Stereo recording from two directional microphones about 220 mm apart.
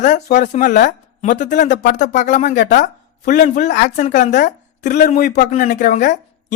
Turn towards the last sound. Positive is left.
turn(degrees=35)  # may be behind; listen again after turning